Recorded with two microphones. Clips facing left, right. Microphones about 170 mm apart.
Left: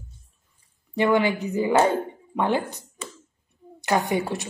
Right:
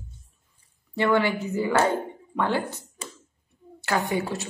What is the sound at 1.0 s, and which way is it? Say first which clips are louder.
A woman's voice: left 2 dB; 15° left (ahead or behind).